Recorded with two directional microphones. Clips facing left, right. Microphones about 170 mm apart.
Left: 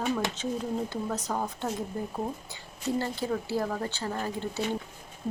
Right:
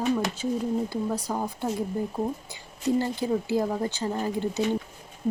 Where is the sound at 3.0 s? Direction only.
15° right (ahead or behind).